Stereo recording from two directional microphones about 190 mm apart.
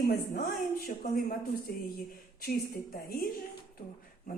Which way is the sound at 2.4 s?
50° left (ahead or behind).